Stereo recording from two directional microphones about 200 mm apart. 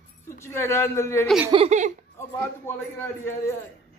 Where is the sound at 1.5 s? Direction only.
30° right (ahead or behind).